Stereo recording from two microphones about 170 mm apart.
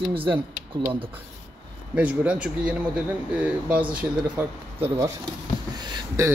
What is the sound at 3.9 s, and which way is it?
Speech, 10° right (ahead or behind).